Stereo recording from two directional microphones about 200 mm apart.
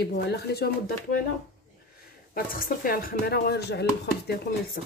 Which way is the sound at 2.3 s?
45° left (ahead or behind).